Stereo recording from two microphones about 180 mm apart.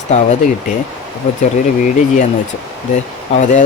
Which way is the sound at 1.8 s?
45° left (ahead or behind).